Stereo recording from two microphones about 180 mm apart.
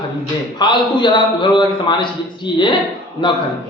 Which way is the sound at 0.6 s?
25° left (ahead or behind).